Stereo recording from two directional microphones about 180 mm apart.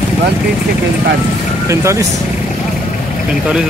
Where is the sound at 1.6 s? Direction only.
15° right (ahead or behind).